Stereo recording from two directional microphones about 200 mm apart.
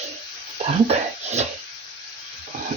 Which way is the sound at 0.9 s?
35° right (ahead or behind).